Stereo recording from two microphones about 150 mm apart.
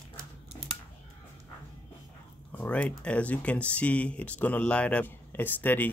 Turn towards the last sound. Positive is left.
turn(degrees=15)  # may be behind; listen again after turning